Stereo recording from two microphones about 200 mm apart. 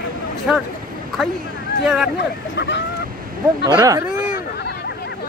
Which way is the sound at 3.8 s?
15° right (ahead or behind).